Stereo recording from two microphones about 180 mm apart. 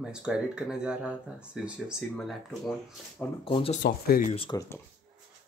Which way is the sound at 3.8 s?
55° left (ahead or behind).